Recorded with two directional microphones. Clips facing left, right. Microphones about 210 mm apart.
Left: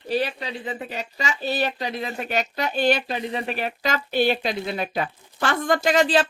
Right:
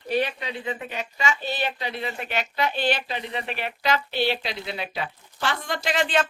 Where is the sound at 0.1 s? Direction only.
35° left (ahead or behind).